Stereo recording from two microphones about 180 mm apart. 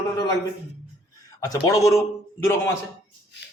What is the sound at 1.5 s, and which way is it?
A man's voice, 20° left (ahead or behind).